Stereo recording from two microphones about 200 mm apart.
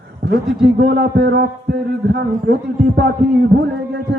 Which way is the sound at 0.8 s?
55° right (ahead or behind).